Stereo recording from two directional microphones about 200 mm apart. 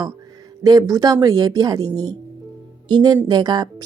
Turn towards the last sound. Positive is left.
turn(degrees=-20)  # may be behind; listen again after turning